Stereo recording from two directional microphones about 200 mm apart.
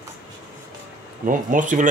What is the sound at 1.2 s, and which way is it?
Speech, 40° right (ahead or behind).